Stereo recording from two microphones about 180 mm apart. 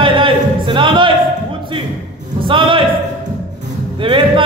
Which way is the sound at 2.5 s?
30° right (ahead or behind).